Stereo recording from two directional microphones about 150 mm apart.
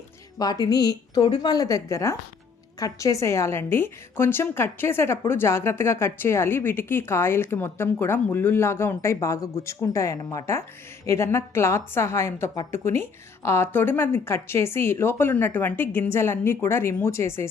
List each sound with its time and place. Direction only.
0.3 s a woman's voice: 25° left (ahead or behind)